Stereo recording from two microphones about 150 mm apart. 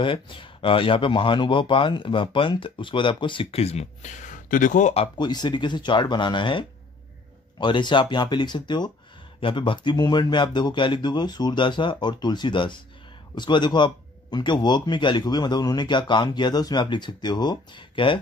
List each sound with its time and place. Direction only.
0.0 s speech: 35° left (ahead or behind)
5.1 s speech: 30° left (ahead or behind)
7.6 s speech: 30° left (ahead or behind)